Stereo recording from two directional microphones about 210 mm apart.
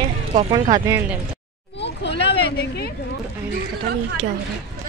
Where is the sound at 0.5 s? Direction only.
20° right (ahead or behind).